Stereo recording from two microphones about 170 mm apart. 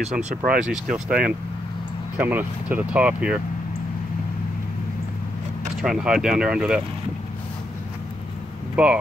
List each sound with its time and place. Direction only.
0.5 s speech: 5° right (ahead or behind)
5.8 s speech: 5° right (ahead or behind)
8.8 s speech: 5° right (ahead or behind)